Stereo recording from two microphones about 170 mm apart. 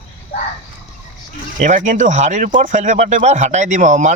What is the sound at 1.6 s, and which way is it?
Speech, 45° right (ahead or behind).